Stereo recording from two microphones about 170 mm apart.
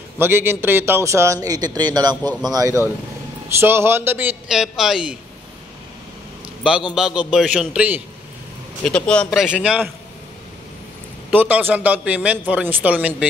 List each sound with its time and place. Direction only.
0.2 s a man's voice: 15° right (ahead or behind)
7.0 s speech: 5° right (ahead or behind)
8.8 s speech: 5° left (ahead or behind)
11.2 s a man's voice: 10° right (ahead or behind)